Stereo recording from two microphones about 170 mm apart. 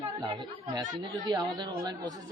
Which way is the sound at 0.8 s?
25° right (ahead or behind).